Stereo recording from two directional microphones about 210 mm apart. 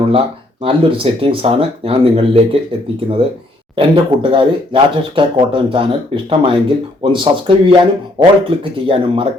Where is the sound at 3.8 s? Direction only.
25° right (ahead or behind).